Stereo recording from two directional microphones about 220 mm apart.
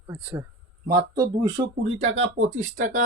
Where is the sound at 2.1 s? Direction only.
65° right (ahead or behind).